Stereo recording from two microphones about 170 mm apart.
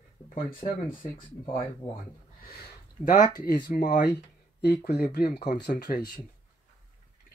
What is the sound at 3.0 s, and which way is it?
Speech, 50° left (ahead or behind).